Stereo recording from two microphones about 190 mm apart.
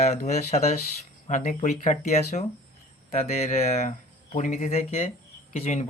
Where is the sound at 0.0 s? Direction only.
35° left (ahead or behind).